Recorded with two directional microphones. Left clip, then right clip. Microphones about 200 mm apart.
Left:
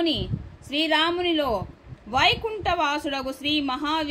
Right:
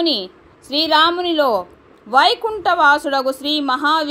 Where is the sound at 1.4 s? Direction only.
20° right (ahead or behind).